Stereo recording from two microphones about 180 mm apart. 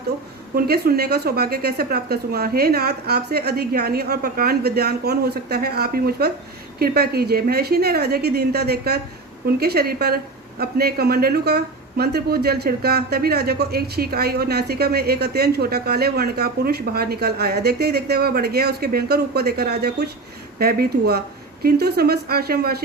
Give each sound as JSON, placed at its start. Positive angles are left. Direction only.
{"t": 0.5, "sound": "speech", "side_deg": -60}